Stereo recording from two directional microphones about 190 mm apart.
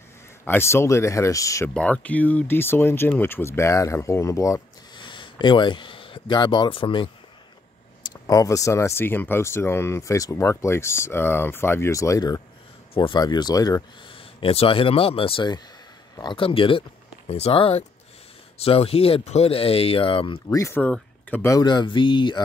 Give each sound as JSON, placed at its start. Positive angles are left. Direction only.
{"t": 0.5, "sound": "speech", "side_deg": 15}
{"t": 1.7, "sound": "speech", "side_deg": 5}
{"t": 20.4, "sound": "speech", "side_deg": 15}